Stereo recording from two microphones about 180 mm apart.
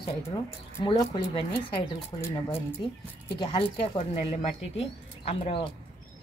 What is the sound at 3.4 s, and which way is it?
Speech, 25° left (ahead or behind).